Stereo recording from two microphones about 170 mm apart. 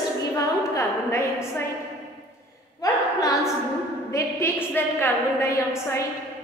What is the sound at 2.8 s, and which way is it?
A woman's voice, 20° left (ahead or behind).